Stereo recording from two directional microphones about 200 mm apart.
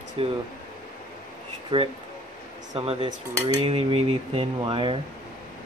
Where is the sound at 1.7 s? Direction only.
25° right (ahead or behind).